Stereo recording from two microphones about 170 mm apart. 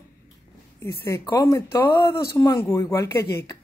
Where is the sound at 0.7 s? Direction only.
15° left (ahead or behind).